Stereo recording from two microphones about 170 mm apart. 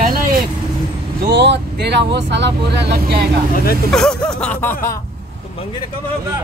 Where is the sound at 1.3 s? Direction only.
90° right; by 3.3 s 65° right (ahead or behind).